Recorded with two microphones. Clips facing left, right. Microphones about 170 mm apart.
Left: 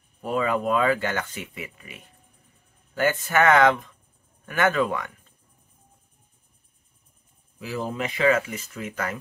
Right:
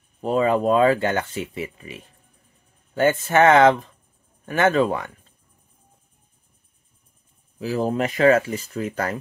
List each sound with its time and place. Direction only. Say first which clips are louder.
0.2 s speech: right 5 dB; 30° right (ahead or behind)
7.5 s speech: right 7 dB; 40° right (ahead or behind)